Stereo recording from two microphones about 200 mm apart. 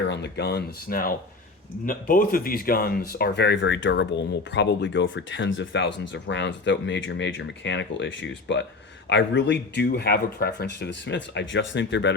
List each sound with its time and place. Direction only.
0.1 s speech: 55° left (ahead or behind)